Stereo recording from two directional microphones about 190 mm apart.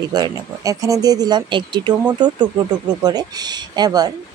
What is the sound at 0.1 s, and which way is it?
A woman's voice, 20° right (ahead or behind).